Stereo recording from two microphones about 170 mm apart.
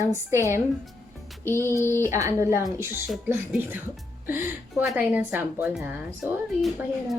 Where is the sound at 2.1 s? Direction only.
15° right (ahead or behind).